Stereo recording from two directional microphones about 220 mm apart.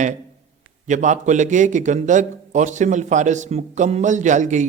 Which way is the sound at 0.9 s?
35° right (ahead or behind).